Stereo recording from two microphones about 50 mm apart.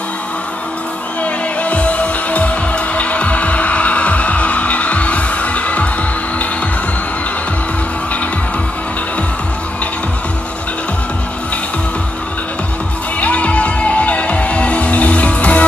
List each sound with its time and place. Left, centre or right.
1.6 s music: left
13.2 s music: left